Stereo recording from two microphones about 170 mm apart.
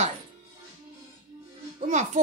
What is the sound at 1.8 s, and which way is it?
Speech, 50° right (ahead or behind).